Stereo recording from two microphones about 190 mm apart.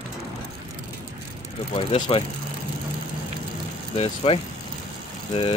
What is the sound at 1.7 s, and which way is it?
Speech, 30° left (ahead or behind).